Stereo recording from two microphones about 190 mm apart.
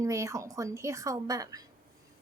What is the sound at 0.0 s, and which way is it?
A woman's voice, 15° right (ahead or behind).